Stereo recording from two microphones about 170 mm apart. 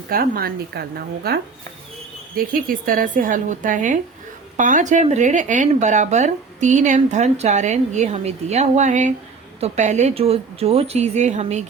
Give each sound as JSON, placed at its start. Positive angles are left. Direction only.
{"t": 0.1, "sound": "a woman's voice", "side_deg": -60}